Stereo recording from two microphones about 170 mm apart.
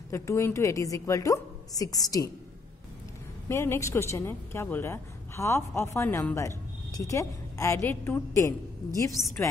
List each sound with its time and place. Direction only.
0.1 s a woman's voice: 15° left (ahead or behind)
3.4 s a woman's voice: 15° left (ahead or behind)